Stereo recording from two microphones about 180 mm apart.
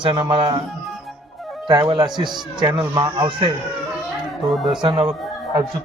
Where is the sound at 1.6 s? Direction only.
25° right (ahead or behind).